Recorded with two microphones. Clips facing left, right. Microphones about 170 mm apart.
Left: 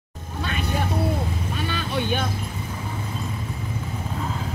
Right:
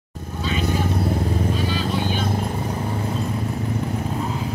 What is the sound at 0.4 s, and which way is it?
Vehicle, 60° left (ahead or behind).